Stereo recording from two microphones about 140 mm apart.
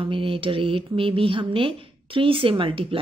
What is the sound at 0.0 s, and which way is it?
Speech, 40° right (ahead or behind).